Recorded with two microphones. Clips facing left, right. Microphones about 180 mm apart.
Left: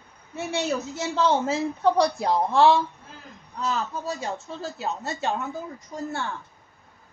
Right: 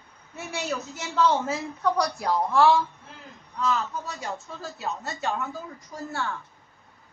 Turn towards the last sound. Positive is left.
turn(degrees=25)  # may be behind; listen again after turning